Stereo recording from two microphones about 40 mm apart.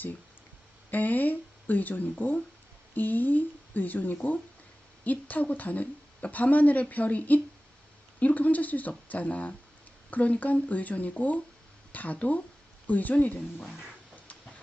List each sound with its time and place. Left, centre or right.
0.9 s a woman's voice: left